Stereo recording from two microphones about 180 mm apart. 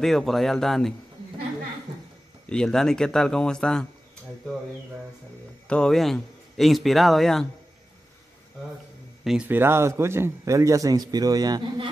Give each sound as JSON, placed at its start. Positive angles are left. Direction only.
{"t": 0.0, "sound": "speech", "side_deg": 0}
{"t": 2.5, "sound": "speech", "side_deg": 5}
{"t": 5.7, "sound": "speech", "side_deg": 5}
{"t": 9.2, "sound": "speech", "side_deg": -5}